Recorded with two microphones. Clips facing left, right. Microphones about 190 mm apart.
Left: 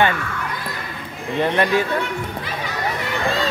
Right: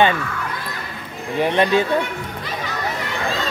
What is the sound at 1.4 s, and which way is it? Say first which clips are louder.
Speech: right 2 dB; 20° right (ahead or behind).